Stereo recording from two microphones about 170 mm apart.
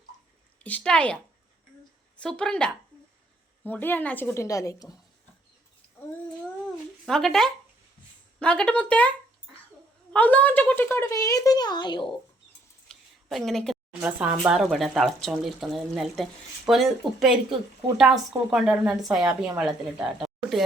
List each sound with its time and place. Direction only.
0.6 s a woman's voice: 10° left (ahead or behind)
7.0 s a woman's voice: centre (ahead or behind); by 12.1 s 25° left (ahead or behind)
12.9 s a sound: centre (ahead or behind)
14.0 s speech: 10° right (ahead or behind)